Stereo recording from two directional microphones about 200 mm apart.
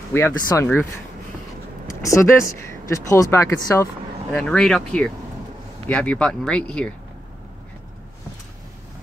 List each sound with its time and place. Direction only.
0.1 s speech: 15° left (ahead or behind)
2.0 s speech: 15° left (ahead or behind)